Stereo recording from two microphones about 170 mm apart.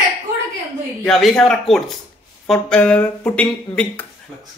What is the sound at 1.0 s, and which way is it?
Speech, centre (ahead or behind).